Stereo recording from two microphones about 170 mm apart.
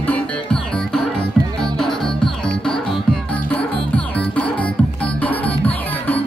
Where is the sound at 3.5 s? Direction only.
5° left (ahead or behind).